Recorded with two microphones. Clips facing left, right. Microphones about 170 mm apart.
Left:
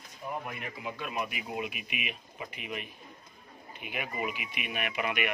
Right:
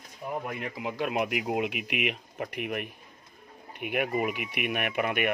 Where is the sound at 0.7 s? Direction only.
85° right.